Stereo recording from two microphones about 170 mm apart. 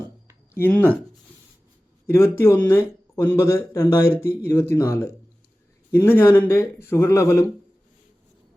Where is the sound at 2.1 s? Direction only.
15° left (ahead or behind).